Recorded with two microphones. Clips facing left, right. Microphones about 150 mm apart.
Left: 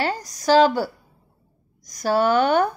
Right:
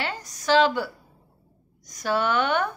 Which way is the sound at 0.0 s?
40° left (ahead or behind).